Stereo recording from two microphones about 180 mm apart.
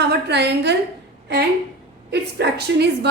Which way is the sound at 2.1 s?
70° right (ahead or behind).